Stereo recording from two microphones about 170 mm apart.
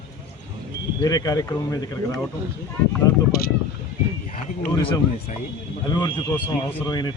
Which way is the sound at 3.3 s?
60° left (ahead or behind).